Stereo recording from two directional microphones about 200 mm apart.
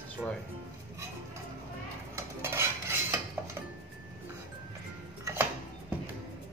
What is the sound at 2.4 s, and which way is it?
Cutlery, 10° right (ahead or behind).